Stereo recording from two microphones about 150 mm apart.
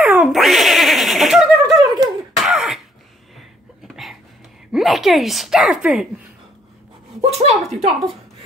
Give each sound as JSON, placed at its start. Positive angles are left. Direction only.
{"t": 0.0, "sound": "cat", "side_deg": -5}
{"t": 2.0, "sound": "cough", "side_deg": 0}
{"t": 3.3, "sound": "a sound", "side_deg": 0}
{"t": 4.7, "sound": "speech", "side_deg": 0}
{"t": 7.2, "sound": "speech", "side_deg": -45}